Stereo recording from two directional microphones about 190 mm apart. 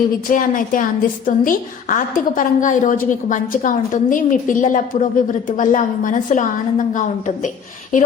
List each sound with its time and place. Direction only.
0.3 s a woman's voice: 45° left (ahead or behind)